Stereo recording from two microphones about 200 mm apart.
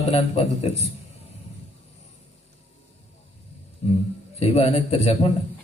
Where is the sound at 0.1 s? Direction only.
30° left (ahead or behind).